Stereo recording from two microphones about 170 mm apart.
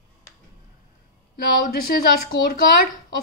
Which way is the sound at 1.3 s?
60° left (ahead or behind).